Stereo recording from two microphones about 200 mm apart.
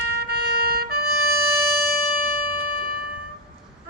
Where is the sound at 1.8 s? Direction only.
50° right (ahead or behind).